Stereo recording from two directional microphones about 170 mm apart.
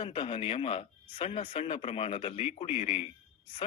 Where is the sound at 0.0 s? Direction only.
30° left (ahead or behind).